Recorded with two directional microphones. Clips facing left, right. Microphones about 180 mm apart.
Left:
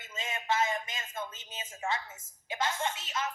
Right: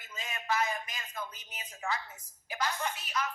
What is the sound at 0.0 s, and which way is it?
A man's voice, 25° left (ahead or behind).